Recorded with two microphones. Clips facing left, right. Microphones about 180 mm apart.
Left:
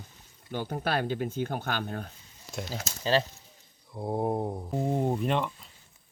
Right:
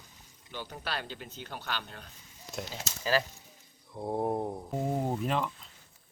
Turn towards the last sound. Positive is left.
turn(degrees=0)  # may be behind; listen again after turning